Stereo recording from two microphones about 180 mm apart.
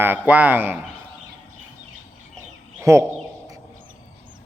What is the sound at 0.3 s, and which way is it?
Speech, 10° right (ahead or behind).